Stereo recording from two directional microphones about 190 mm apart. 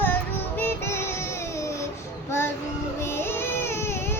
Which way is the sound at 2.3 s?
15° left (ahead or behind).